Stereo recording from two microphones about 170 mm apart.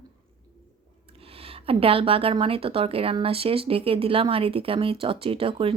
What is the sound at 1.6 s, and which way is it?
A woman's voice, 35° right (ahead or behind).